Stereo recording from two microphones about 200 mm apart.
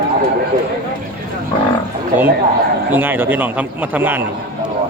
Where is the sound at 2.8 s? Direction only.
10° right (ahead or behind).